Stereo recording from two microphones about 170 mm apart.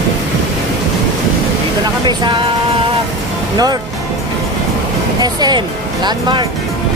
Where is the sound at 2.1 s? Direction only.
30° right (ahead or behind).